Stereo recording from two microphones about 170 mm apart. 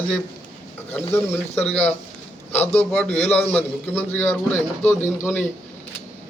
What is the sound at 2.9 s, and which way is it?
A man's voice, 5° left (ahead or behind).